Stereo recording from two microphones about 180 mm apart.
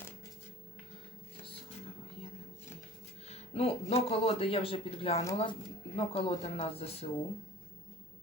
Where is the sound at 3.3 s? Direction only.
35° left (ahead or behind).